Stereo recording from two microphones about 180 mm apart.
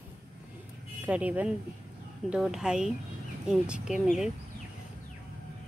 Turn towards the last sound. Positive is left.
turn(degrees=0)  # may be behind; listen again after turning